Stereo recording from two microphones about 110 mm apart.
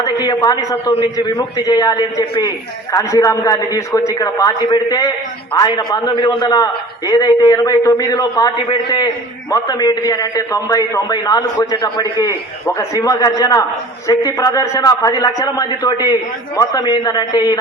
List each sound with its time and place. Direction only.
0.0 s a man's voice: 40° left (ahead or behind)